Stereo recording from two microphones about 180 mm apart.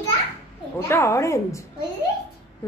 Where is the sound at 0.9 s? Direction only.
15° left (ahead or behind).